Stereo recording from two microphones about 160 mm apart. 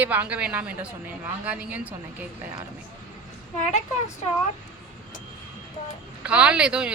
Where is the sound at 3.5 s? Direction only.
50° left (ahead or behind).